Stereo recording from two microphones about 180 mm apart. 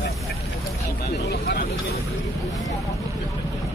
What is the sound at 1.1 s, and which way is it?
Speech, 65° left (ahead or behind).